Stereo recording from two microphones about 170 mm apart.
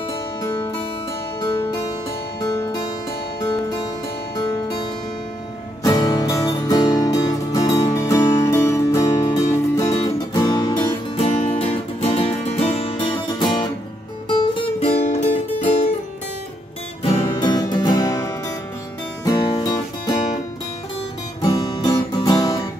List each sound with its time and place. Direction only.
5.9 s music: 20° left (ahead or behind); by 15.2 s 40° left (ahead or behind)
17.0 s music: 30° left (ahead or behind)
21.4 s music: 25° left (ahead or behind)